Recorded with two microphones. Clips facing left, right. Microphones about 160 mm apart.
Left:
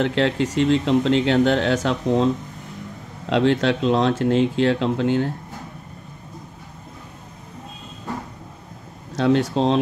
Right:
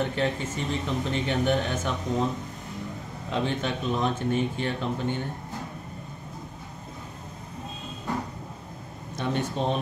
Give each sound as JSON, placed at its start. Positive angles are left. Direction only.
{"t": 0.0, "sound": "speech", "side_deg": 90}
{"t": 3.3, "sound": "speech", "side_deg": 90}
{"t": 9.1, "sound": "speech", "side_deg": 90}